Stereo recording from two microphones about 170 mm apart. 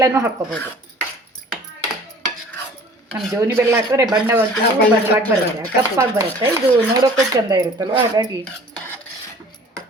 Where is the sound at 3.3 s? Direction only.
15° right (ahead or behind).